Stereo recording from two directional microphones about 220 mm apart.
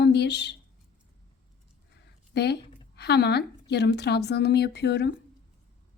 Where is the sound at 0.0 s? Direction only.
50° left (ahead or behind).